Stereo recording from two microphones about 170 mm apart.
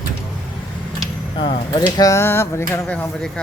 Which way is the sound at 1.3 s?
30° left (ahead or behind).